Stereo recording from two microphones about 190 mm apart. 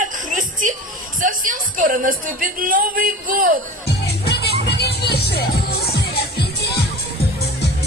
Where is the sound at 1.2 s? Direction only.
45° right (ahead or behind).